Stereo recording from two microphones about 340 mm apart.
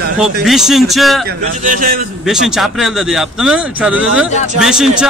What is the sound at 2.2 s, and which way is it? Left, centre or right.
Speech, centre.